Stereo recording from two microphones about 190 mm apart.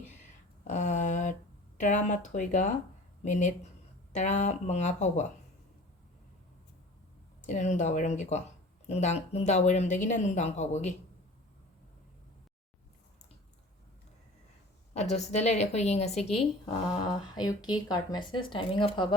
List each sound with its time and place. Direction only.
0.7 s a sound: 40° left (ahead or behind)
1.8 s speech: 40° left (ahead or behind)
7.4 s speech: 40° left (ahead or behind)
14.9 s speech: 35° left (ahead or behind)
17.2 s speech: 20° left (ahead or behind)